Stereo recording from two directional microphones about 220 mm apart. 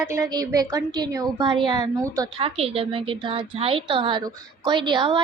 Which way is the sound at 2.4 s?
25° right (ahead or behind).